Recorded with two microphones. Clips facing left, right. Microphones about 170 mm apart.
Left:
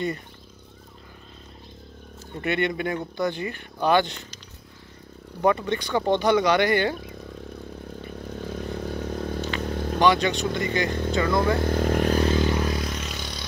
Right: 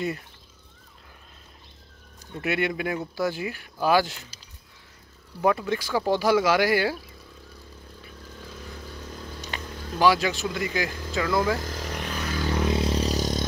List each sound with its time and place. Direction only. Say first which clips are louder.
2.4 s speech: left 1 dB; 5° right (ahead or behind)
5.4 s speech: left 1 dB; 5° right (ahead or behind)
8.2 s vehicle: left 10 dB; 60° left (ahead or behind)
9.9 s speech: left 1 dB; 5° right (ahead or behind)
11.5 s speech: left 9 dB; 60° left (ahead or behind)
12.2 s music: left 9 dB; 25° left (ahead or behind)
12.6 s vehicle: right 4 dB; 25° right (ahead or behind); by 13.5 s 40° right (ahead or behind)